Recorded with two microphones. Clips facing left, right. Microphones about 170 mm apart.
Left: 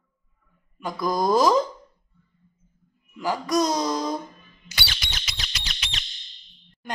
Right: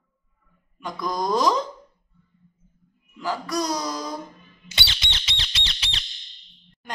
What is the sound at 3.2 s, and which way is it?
Speech, 15° left (ahead or behind).